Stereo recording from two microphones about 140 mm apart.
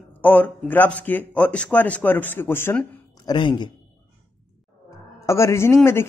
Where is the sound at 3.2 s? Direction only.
30° left (ahead or behind).